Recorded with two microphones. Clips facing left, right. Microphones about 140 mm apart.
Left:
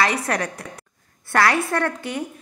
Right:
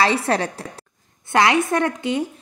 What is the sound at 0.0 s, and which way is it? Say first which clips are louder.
A woman's voice: right 3 dB; 30° right (ahead or behind).